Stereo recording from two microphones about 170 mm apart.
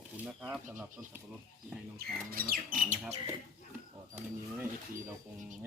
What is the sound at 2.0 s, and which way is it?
Speech, 60° right (ahead or behind).